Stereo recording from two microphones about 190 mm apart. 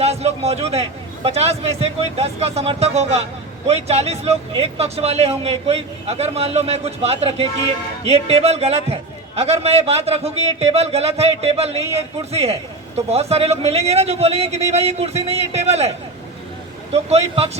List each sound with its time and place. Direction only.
0.0 s a man's voice: 35° right (ahead or behind)
16.9 s a man's voice: 35° right (ahead or behind)